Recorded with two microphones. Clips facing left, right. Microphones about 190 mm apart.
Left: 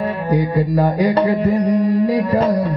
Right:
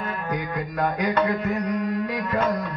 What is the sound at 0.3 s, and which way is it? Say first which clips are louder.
Music: left 13 dB; 30° left (ahead or behind).